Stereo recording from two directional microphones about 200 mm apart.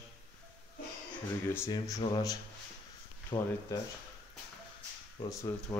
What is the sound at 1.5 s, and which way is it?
Speech, 15° left (ahead or behind).